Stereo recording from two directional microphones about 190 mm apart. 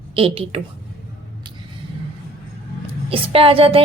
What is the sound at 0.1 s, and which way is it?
Speech, 30° right (ahead or behind).